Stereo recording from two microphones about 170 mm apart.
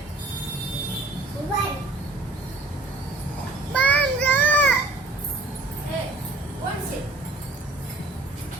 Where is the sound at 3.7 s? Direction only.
10° left (ahead or behind).